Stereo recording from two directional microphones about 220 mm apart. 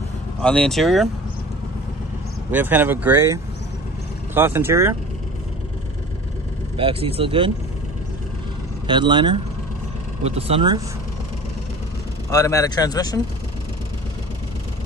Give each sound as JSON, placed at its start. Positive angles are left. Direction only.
{"t": 0.4, "sound": "speech", "side_deg": 5}
{"t": 2.5, "sound": "speech", "side_deg": -10}
{"t": 6.8, "sound": "speech", "side_deg": -25}
{"t": 8.8, "sound": "speech", "side_deg": -20}
{"t": 12.3, "sound": "speech", "side_deg": 15}